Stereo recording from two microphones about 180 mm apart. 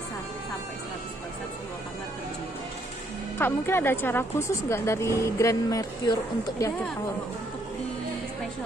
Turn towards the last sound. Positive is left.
turn(degrees=15)  # may be behind; listen again after turning